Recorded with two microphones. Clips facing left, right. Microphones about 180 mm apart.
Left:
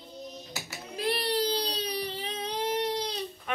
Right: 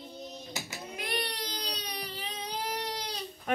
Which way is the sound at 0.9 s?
30° left (ahead or behind).